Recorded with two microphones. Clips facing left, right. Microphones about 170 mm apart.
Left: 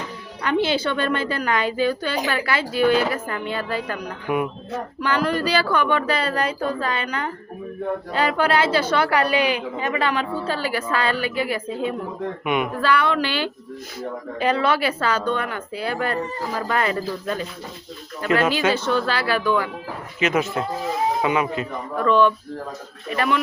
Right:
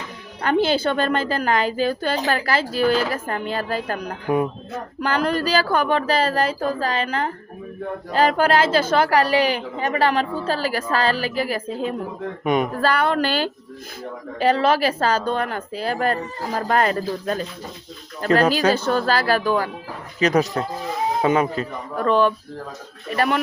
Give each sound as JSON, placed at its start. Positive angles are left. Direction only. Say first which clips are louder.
{"t": 0.4, "sound": "a woman's voice", "louder": "right 2 dB", "side_deg": -45}